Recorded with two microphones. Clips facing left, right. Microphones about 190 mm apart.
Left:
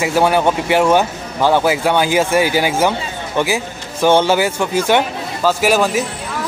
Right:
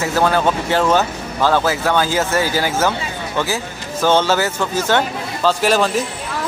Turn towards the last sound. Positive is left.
turn(degrees=10)  # may be behind; listen again after turning